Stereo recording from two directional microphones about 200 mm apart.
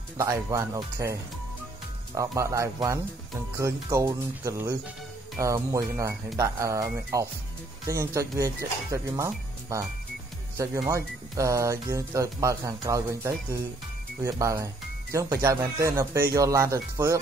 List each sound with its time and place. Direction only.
0.2 s speech: 15° right (ahead or behind)
2.1 s speech: 15° right (ahead or behind)
10.9 s speech: 15° right (ahead or behind)